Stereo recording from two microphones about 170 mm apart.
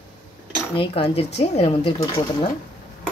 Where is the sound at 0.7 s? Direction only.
30° left (ahead or behind).